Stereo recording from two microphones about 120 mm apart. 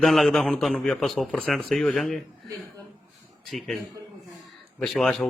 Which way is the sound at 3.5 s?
5° left (ahead or behind).